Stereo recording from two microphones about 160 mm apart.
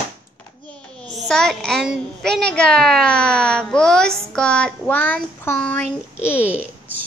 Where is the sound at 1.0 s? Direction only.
5° left (ahead or behind).